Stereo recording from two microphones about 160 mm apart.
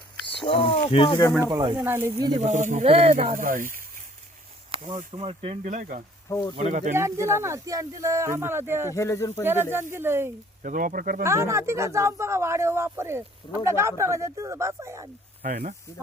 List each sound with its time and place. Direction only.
0.3 s speech: 35° left (ahead or behind)
1.4 s speech: 20° right (ahead or behind)
2.4 s speech: 50° right (ahead or behind)
4.7 s a sound: 35° right (ahead or behind)
4.9 s speech: 40° right (ahead or behind)
6.2 s speech: 20° left (ahead or behind)
6.6 s speech: 45° right (ahead or behind)
6.9 s speech: 15° right (ahead or behind)
9.0 s speech: 20° left (ahead or behind)
9.4 s speech: 15° right (ahead or behind)
10.6 s speech: 55° right (ahead or behind)
11.2 s speech: 20° right (ahead or behind)
15.4 s speech: 55° right (ahead or behind)